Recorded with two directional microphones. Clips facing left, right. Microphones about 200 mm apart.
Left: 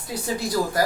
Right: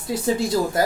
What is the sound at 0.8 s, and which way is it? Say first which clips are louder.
Speech: right 1 dB; 25° right (ahead or behind).